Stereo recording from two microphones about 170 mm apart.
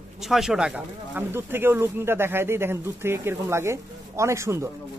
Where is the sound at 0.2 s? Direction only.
Centre (ahead or behind).